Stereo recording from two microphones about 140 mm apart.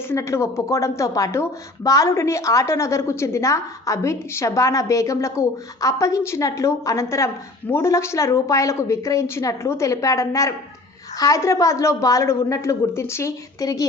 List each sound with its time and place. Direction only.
0.1 s a woman's voice: 20° left (ahead or behind)